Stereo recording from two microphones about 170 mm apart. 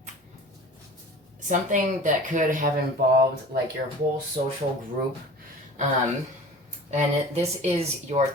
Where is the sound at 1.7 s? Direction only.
50° right (ahead or behind).